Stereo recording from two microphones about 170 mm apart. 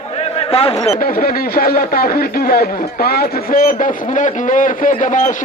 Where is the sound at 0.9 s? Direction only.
60° left (ahead or behind).